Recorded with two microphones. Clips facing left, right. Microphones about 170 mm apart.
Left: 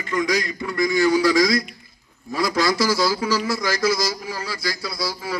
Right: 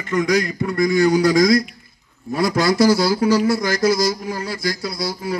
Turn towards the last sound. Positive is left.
turn(degrees=-50)  # may be behind; listen again after turning